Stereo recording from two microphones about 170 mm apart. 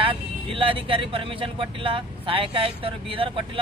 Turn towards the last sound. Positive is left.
turn(degrees=-30)  # may be behind; listen again after turning